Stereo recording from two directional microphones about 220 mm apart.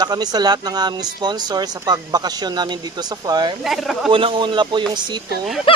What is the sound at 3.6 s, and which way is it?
Speech, centre (ahead or behind).